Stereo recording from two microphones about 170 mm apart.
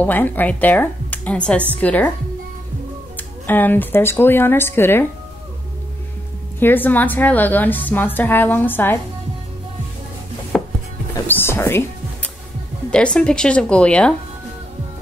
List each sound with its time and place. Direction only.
0.0 s a woman's voice: 10° left (ahead or behind)
3.2 s a woman's voice: 10° left (ahead or behind)
6.6 s a woman's voice: 10° left (ahead or behind)
10.5 s chopping: 5° left (ahead or behind)
11.1 s music: 15° left (ahead or behind)
12.9 s a woman's voice: 5° left (ahead or behind)